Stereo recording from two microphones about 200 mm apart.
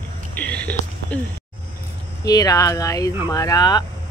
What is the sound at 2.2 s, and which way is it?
Speech, 20° left (ahead or behind).